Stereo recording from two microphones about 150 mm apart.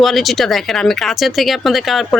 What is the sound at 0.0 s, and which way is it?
Speech, centre (ahead or behind).